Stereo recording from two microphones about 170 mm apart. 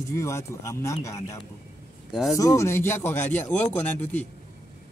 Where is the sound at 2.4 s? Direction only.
20° left (ahead or behind).